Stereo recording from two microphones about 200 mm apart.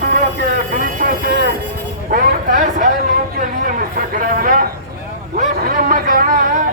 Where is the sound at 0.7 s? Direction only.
45° right (ahead or behind).